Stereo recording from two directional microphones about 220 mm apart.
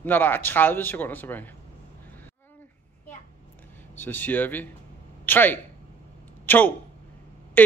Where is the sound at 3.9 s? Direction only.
10° left (ahead or behind).